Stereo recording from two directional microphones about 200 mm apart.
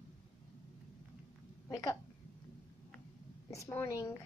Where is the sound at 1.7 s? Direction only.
15° left (ahead or behind).